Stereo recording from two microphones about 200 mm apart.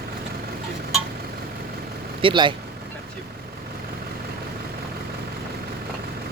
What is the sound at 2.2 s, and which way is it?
Speech, 25° right (ahead or behind).